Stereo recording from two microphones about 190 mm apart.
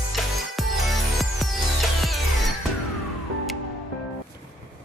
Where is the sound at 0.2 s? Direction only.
Centre (ahead or behind).